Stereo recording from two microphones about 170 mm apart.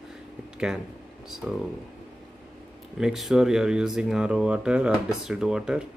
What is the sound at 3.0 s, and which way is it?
Speech, centre (ahead or behind).